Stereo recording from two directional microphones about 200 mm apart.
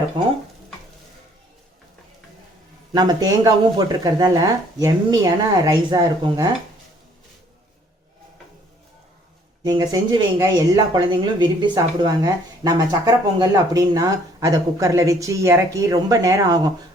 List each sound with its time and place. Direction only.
2.9 s speech: 20° right (ahead or behind)
9.6 s speech: 20° right (ahead or behind)